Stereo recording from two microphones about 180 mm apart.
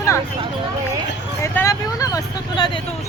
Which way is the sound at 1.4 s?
15° left (ahead or behind).